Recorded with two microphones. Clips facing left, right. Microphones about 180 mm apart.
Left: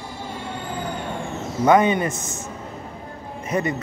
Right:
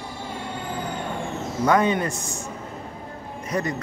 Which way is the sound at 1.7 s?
5° left (ahead or behind).